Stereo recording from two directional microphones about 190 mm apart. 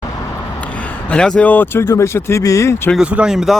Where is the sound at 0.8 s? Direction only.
5° left (ahead or behind).